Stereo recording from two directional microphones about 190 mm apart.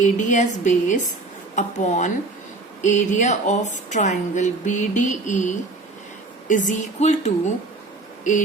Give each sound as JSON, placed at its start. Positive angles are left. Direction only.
{"t": 0.0, "sound": "speech", "side_deg": 40}